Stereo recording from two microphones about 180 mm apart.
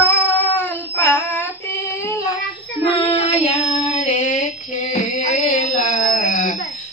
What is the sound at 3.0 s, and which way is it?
Child singing, 35° left (ahead or behind).